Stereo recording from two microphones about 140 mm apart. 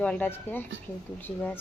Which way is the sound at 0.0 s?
10° left (ahead or behind).